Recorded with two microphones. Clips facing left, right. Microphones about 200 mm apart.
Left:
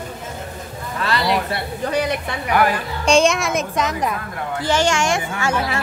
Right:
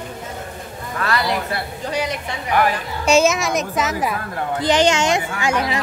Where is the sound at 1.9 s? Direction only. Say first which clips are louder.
Left 3 dB; 55° left (ahead or behind).